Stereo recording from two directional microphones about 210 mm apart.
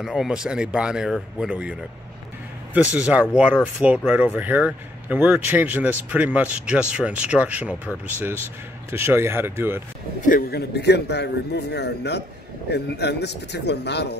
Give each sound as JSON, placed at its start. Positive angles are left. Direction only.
{"t": 0.0, "sound": "speech", "side_deg": 0}
{"t": 8.9, "sound": "speech", "side_deg": -10}
{"t": 10.2, "sound": "a man's voice", "side_deg": 45}